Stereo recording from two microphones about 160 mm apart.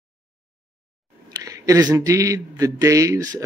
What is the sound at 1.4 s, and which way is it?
A man's voice, 20° right (ahead or behind).